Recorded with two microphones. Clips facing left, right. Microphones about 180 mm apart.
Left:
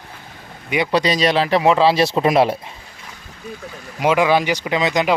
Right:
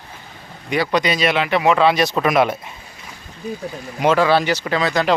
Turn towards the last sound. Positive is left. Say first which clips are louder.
# left 1 dB
turn(degrees=20)  # may be behind; listen again after turning